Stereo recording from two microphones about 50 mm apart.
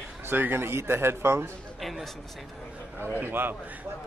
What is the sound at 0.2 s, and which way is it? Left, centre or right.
A man's voice, right.